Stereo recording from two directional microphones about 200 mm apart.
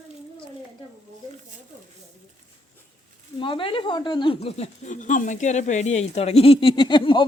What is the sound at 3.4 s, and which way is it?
Speech, 25° left (ahead or behind).